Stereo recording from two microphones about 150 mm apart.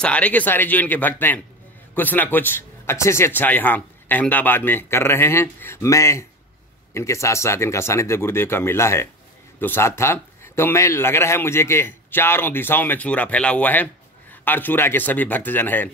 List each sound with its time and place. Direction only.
0.0 s a man's voice: 10° left (ahead or behind)